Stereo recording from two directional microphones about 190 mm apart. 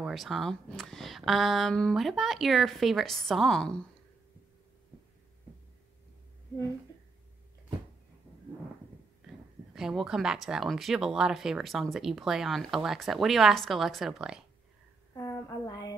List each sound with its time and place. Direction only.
0.0 s speech: centre (ahead or behind)
9.8 s speech: 5° right (ahead or behind)
15.1 s a sound: 15° left (ahead or behind)